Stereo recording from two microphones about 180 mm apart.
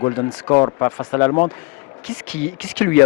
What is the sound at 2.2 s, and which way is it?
Speech, 10° left (ahead or behind).